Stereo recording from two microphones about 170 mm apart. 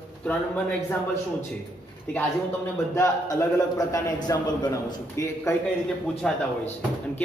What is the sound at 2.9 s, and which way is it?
A man's voice, 20° left (ahead or behind).